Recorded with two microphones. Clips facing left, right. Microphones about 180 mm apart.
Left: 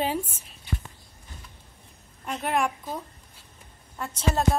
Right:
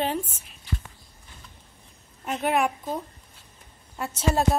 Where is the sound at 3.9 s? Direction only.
10° right (ahead or behind).